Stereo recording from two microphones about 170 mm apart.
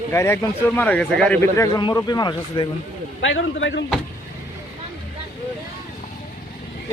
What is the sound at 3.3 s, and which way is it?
Speech, 90° left.